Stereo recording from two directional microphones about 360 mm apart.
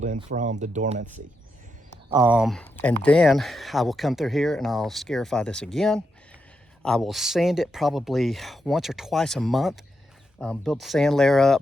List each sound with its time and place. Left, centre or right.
0.0 s speech: centre
2.0 s speech: centre